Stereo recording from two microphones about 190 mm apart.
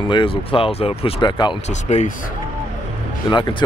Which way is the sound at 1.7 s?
35° left (ahead or behind).